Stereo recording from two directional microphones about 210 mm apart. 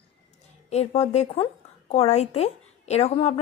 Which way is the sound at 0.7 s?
30° left (ahead or behind).